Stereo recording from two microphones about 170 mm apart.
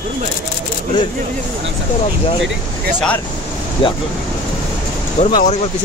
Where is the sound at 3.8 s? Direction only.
30° left (ahead or behind).